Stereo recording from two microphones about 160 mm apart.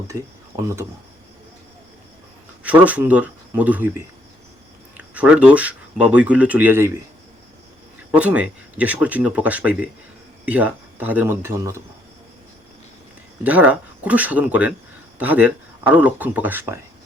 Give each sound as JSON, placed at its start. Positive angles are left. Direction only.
{"t": 0.1, "sound": "speech", "side_deg": -20}
{"t": 2.6, "sound": "speech", "side_deg": -10}
{"t": 8.1, "sound": "speech", "side_deg": -10}
{"t": 13.4, "sound": "speech", "side_deg": -10}